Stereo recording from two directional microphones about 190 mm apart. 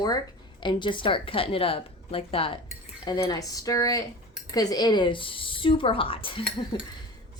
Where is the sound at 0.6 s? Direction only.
25° left (ahead or behind).